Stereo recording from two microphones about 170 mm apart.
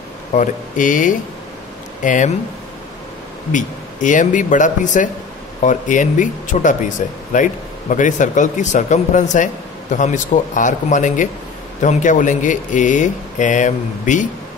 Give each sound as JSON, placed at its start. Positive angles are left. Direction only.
{"t": 0.3, "sound": "speech", "side_deg": 50}
{"t": 3.5, "sound": "speech", "side_deg": 50}